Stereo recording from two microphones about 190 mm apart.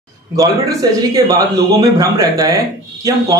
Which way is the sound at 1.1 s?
15° right (ahead or behind).